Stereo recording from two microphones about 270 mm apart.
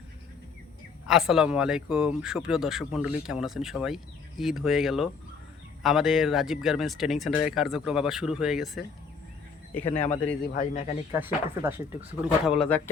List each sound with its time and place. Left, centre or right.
1.0 s speech: centre
10.0 s speech: centre
10.5 s speech: left
11.1 s speech: centre